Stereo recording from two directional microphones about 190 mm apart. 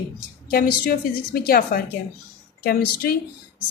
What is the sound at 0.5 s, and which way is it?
A woman's voice, 50° left (ahead or behind).